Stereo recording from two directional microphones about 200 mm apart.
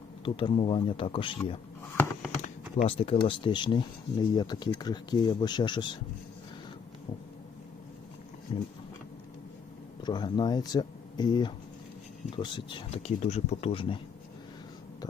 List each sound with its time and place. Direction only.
0.3 s speech: 25° left (ahead or behind)
2.8 s speech: 30° left (ahead or behind)
8.5 s speech: 30° left (ahead or behind)
10.0 s speech: 20° left (ahead or behind)